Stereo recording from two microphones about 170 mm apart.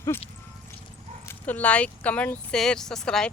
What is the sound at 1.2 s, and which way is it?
A man's voice, 10° left (ahead or behind).